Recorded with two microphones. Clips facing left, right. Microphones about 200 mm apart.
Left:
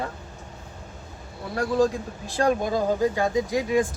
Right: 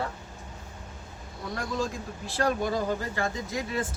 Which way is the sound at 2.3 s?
15° left (ahead or behind).